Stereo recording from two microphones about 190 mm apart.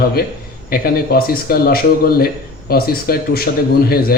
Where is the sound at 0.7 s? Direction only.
50° left (ahead or behind).